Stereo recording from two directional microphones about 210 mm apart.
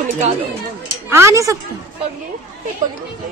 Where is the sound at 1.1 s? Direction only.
15° right (ahead or behind).